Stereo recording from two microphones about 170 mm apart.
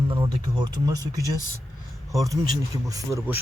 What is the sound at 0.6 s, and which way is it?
Speech, 20° right (ahead or behind).